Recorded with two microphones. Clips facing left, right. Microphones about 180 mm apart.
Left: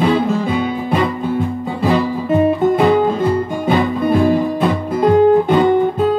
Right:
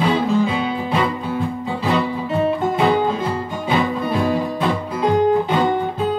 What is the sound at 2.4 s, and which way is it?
Guitar, 50° left (ahead or behind).